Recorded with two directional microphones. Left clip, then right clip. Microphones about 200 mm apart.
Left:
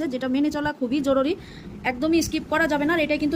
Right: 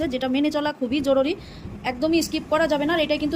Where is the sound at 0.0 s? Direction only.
5° left (ahead or behind).